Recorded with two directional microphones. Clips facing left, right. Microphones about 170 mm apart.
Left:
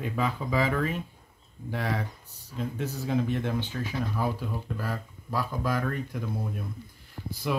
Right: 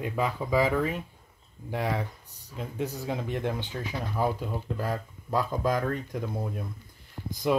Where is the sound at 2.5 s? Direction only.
15° right (ahead or behind).